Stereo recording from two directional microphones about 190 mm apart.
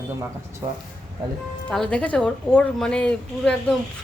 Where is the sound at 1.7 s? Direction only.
5° left (ahead or behind).